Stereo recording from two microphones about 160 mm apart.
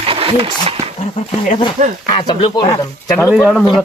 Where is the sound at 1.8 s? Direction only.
50° right (ahead or behind).